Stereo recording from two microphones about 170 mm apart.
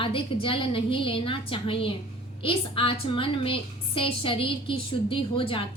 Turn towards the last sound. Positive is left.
turn(degrees=30)  # may be behind; listen again after turning